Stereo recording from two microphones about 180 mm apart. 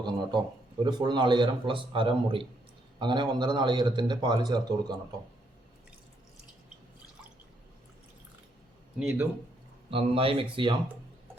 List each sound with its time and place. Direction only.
0.0 s speech: 25° right (ahead or behind)
9.0 s a man's voice: 5° right (ahead or behind)
9.9 s speech: 30° right (ahead or behind)